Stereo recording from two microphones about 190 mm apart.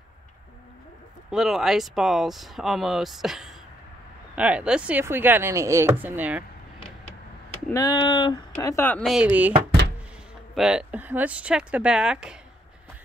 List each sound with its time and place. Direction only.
1.3 s speech: centre (ahead or behind)
7.7 s speech: 20° left (ahead or behind)
9.1 s speech: 5° right (ahead or behind)
10.5 s speech: 5° right (ahead or behind)